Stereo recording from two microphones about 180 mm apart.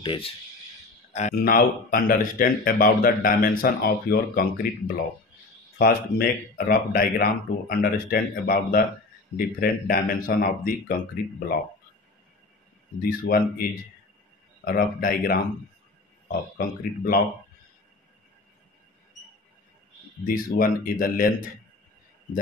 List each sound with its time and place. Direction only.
0.0 s speech: 30° left (ahead or behind)
1.3 s speech: 55° left (ahead or behind)
13.2 s speech: 55° left (ahead or behind)
20.2 s speech: 55° left (ahead or behind)